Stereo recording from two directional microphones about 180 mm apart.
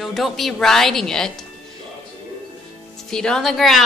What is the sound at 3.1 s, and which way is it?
Speech, 5° left (ahead or behind).